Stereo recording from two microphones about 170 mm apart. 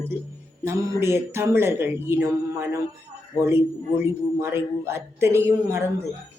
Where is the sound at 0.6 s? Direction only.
15° right (ahead or behind).